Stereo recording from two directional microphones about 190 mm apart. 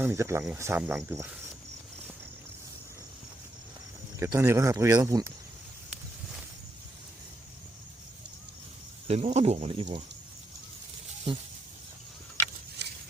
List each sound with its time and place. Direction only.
0.0 s speech: 15° right (ahead or behind)
4.2 s speech: 15° right (ahead or behind)
9.0 s speech: 30° right (ahead or behind)